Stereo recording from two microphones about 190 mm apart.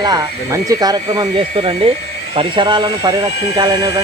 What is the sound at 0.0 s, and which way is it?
Speech, 20° right (ahead or behind).